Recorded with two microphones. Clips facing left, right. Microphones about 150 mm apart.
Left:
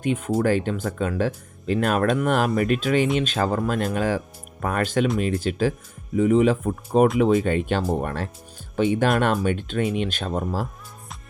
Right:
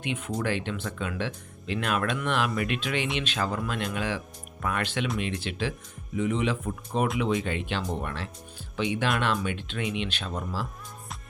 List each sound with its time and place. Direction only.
0.0 s speech: 45° left (ahead or behind)